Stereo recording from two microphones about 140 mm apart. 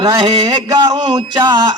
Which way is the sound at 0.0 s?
30° right (ahead or behind).